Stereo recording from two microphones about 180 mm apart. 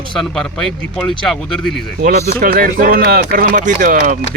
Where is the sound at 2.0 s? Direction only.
60° right (ahead or behind).